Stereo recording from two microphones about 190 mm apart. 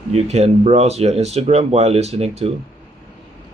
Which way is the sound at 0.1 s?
35° right (ahead or behind).